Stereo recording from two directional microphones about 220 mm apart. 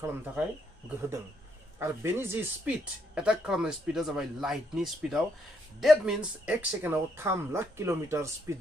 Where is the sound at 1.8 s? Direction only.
10° right (ahead or behind).